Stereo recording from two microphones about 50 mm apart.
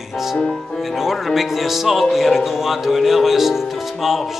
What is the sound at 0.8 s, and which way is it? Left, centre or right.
Speech, centre.